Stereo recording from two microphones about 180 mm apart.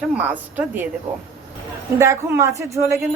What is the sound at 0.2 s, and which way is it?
Speech, 10° right (ahead or behind).